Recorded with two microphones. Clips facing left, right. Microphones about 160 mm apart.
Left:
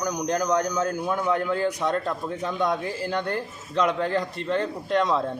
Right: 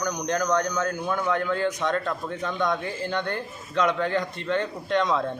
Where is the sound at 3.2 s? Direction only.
35° left (ahead or behind).